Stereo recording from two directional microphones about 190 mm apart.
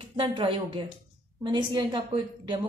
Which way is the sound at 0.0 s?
25° right (ahead or behind).